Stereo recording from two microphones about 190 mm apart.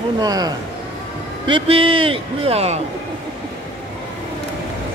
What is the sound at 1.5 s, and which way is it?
A man's voice, 25° right (ahead or behind).